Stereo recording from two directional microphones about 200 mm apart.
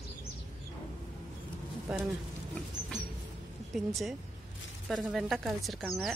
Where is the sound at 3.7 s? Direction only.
Centre (ahead or behind).